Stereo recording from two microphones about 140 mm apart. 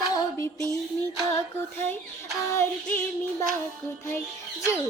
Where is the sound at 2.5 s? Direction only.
20° left (ahead or behind).